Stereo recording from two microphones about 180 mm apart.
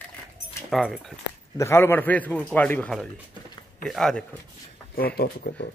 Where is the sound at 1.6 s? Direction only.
15° left (ahead or behind).